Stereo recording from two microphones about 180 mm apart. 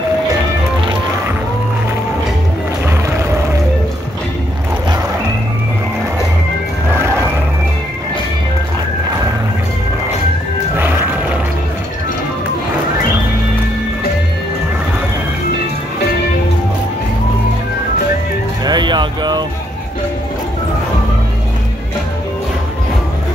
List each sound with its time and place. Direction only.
7.0 s music: 15° right (ahead or behind)
10.8 s music: 10° right (ahead or behind)
18.6 s a sound: 25° right (ahead or behind)